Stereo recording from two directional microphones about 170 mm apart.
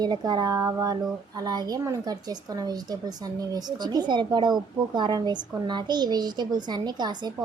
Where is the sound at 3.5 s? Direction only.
25° right (ahead or behind).